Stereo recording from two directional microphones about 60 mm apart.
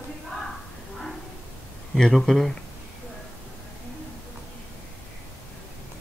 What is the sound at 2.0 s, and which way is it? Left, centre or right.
Speech, centre.